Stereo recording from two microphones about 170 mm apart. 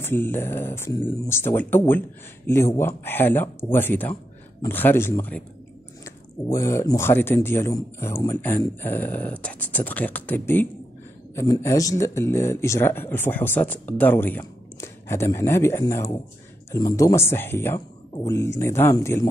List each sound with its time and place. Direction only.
0.0 s speech: 10° left (ahead or behind)